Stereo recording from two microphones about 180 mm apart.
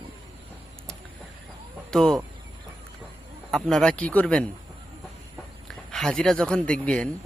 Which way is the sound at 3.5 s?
5° left (ahead or behind).